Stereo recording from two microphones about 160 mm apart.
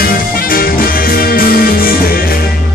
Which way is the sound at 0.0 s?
65° left (ahead or behind).